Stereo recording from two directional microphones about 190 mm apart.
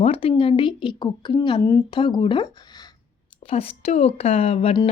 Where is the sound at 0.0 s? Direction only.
30° left (ahead or behind).